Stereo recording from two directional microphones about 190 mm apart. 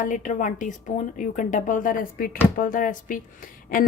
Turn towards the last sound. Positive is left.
turn(degrees=45)  # may be behind; listen again after turning